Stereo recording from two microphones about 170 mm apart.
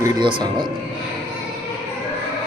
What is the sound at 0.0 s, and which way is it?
Speech, 25° right (ahead or behind).